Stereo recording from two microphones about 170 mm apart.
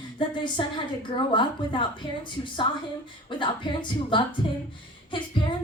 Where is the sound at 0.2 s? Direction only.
30° left (ahead or behind).